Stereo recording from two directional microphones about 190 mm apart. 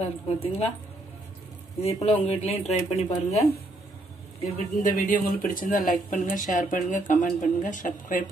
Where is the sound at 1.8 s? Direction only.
35° left (ahead or behind).